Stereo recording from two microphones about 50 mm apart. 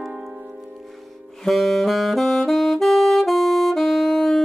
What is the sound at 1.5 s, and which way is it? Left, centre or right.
Saxophone, centre.